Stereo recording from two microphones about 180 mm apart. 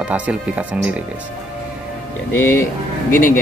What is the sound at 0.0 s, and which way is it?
Speech, 5° right (ahead or behind).